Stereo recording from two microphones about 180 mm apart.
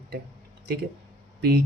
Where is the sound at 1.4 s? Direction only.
65° right (ahead or behind).